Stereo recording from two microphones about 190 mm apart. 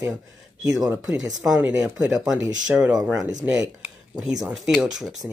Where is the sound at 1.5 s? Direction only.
10° right (ahead or behind).